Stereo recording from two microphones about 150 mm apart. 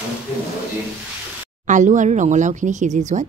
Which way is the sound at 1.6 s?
55° right (ahead or behind).